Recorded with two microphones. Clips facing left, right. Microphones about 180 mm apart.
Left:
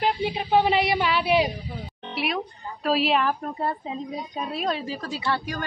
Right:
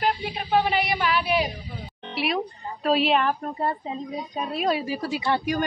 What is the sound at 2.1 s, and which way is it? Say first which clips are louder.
Music: right 2 dB; centre (ahead or behind).